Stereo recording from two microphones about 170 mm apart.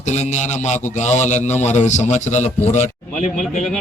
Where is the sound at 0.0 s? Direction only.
40° left (ahead or behind).